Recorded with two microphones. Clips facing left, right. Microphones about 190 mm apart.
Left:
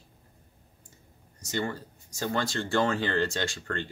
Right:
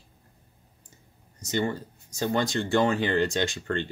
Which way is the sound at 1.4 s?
20° right (ahead or behind).